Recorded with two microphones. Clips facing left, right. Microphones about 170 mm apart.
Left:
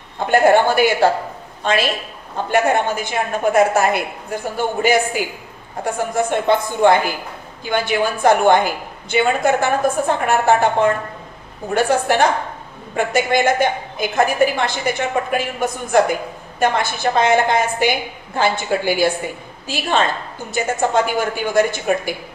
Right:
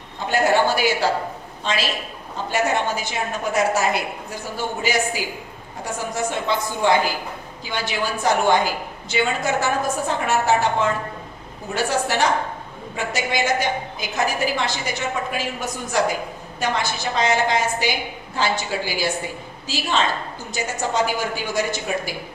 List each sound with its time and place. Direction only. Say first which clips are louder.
0.3 s a woman's voice: left 5 dB; 55° left (ahead or behind)